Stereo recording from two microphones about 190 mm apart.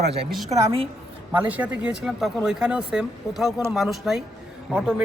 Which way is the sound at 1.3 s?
10° right (ahead or behind).